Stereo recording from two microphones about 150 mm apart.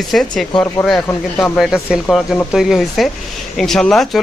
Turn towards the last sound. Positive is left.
turn(degrees=0)  # may be behind; listen again after turning